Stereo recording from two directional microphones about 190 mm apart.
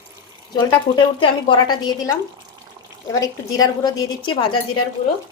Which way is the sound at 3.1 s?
20° left (ahead or behind).